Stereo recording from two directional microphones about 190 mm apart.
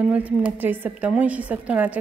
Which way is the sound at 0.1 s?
5° right (ahead or behind).